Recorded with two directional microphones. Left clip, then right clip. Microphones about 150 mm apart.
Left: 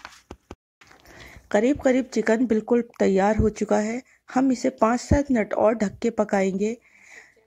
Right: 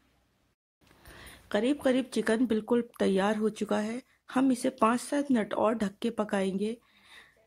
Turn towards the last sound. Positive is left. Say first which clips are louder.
# left 7 dB
turn(degrees=20)  # may be behind; listen again after turning